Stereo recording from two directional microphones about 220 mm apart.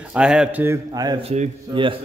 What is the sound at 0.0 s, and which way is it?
A man's voice, 5° right (ahead or behind).